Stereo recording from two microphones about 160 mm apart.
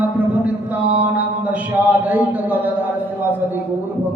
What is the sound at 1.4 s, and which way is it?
A man's voice, 10° right (ahead or behind).